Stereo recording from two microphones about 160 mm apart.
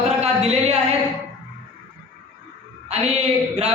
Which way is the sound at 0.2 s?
40° right (ahead or behind).